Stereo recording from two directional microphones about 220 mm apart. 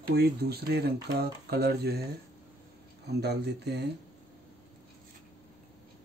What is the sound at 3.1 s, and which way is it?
Speech, 50° right (ahead or behind).